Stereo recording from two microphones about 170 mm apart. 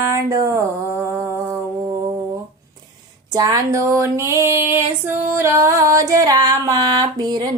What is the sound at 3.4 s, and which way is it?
Female singing, 25° right (ahead or behind).